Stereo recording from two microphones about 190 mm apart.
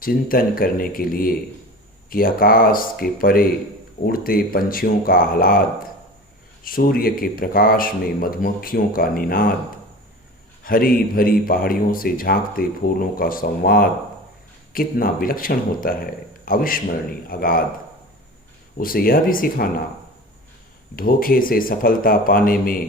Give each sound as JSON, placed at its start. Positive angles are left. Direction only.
{"t": 0.0, "sound": "speech", "side_deg": 50}
{"t": 10.6, "sound": "speech", "side_deg": 50}
{"t": 18.8, "sound": "speech", "side_deg": 50}
{"t": 20.9, "sound": "speech", "side_deg": 50}